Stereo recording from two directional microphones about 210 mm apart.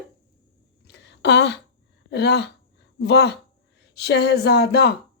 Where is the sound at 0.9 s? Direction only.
55° left (ahead or behind).